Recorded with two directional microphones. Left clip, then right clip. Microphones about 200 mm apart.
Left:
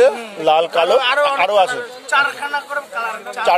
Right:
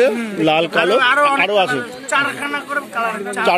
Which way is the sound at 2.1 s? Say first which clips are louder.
Left 2 dB; 10° right (ahead or behind).